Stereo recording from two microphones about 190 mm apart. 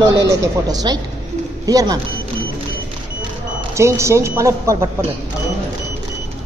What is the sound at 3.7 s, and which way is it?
Speech, 15° right (ahead or behind).